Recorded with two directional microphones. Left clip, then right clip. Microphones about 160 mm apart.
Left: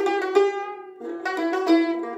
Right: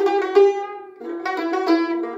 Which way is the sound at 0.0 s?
30° left (ahead or behind).